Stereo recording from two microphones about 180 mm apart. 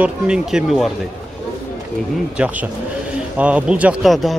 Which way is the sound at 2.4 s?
10° right (ahead or behind).